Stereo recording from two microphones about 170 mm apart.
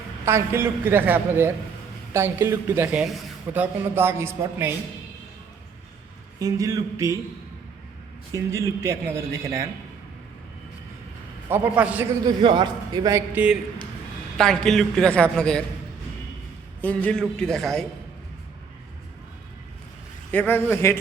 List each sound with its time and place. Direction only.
0.3 s speech: 15° right (ahead or behind)
6.4 s speech: 20° right (ahead or behind)
8.3 s speech: 15° right (ahead or behind)
11.4 s speech: 10° right (ahead or behind)
12.2 s speech: 30° right (ahead or behind)
14.3 s a man's voice: 5° left (ahead or behind)
16.8 s a man's voice: 10° left (ahead or behind)
20.3 s a man's voice: 10° left (ahead or behind)